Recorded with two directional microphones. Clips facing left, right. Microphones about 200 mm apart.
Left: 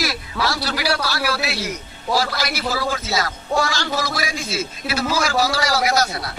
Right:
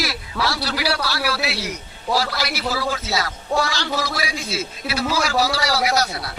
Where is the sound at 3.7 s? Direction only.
45° left (ahead or behind).